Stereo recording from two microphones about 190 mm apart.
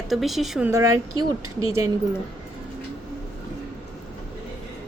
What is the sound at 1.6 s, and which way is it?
Speech, 90° right.